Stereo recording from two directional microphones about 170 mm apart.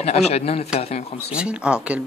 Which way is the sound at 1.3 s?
5° right (ahead or behind).